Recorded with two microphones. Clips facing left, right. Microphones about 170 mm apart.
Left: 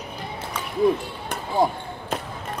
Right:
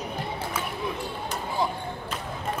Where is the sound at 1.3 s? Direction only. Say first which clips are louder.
Left 7 dB; 50° left (ahead or behind).